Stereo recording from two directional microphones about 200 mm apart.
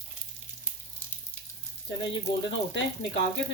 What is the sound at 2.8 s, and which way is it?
Speech, 70° left (ahead or behind).